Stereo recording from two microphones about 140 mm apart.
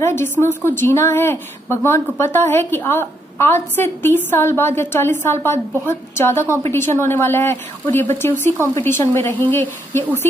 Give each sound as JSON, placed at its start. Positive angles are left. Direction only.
{"t": 0.0, "sound": "a woman's voice", "side_deg": 20}